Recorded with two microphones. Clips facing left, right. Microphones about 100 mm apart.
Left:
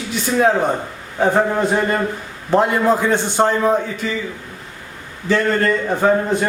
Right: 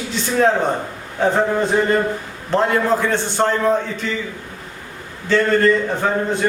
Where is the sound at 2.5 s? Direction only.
15° left (ahead or behind).